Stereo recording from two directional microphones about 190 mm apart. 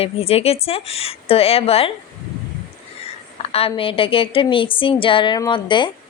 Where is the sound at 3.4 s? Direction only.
30° left (ahead or behind).